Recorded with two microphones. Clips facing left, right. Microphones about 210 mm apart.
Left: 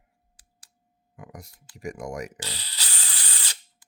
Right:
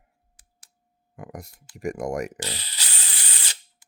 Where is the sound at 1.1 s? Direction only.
50° right (ahead or behind).